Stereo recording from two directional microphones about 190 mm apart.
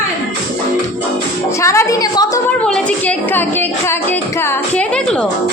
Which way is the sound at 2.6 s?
5° left (ahead or behind).